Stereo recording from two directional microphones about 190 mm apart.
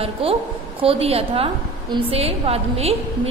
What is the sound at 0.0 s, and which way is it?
A woman's voice, 30° right (ahead or behind).